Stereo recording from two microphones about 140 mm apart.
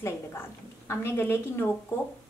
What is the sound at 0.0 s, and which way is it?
A woman's voice, 20° left (ahead or behind).